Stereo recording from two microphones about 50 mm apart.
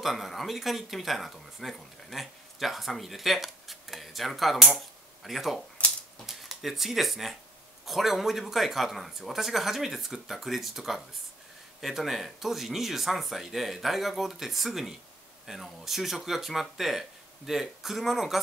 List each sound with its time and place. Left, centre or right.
0.0 s speech: centre
5.8 s typewriter: left
6.2 s speech: centre